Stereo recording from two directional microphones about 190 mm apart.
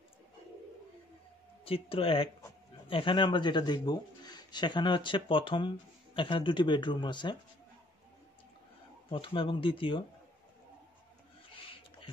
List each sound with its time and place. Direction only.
1.6 s speech: 30° left (ahead or behind)
9.1 s speech: 30° left (ahead or behind)
11.5 s a sound: 30° left (ahead or behind)